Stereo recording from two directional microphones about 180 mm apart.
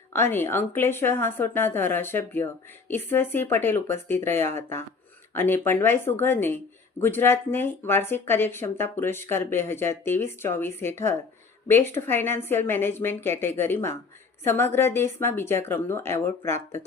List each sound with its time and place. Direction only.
0.1 s speech: 10° left (ahead or behind)